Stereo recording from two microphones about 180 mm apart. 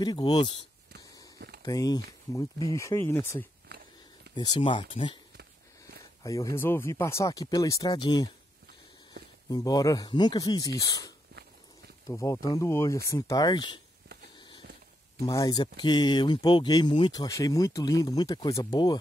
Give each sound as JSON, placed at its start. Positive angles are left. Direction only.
{"t": 0.0, "sound": "speech", "side_deg": 25}
{"t": 1.6, "sound": "speech", "side_deg": 20}
{"t": 3.6, "sound": "a sound", "side_deg": -65}
{"t": 4.4, "sound": "speech", "side_deg": 25}
{"t": 5.4, "sound": "a sound", "side_deg": -60}
{"t": 6.2, "sound": "speech", "side_deg": 15}
{"t": 9.5, "sound": "speech", "side_deg": 20}
{"t": 15.2, "sound": "speech", "side_deg": 20}